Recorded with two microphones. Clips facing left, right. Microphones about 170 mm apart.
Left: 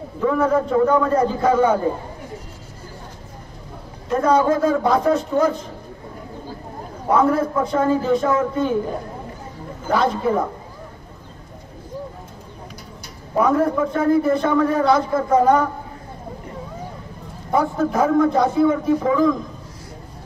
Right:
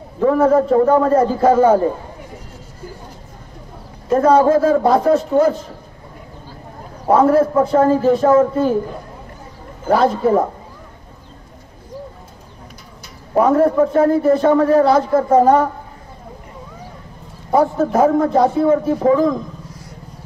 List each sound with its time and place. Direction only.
0.2 s a man's voice: 35° right (ahead or behind)
4.1 s a man's voice: 30° right (ahead or behind)
7.1 s a man's voice: 35° right (ahead or behind)
9.8 s a man's voice: 35° right (ahead or behind)
13.4 s a man's voice: 35° right (ahead or behind)
17.5 s a man's voice: 35° right (ahead or behind)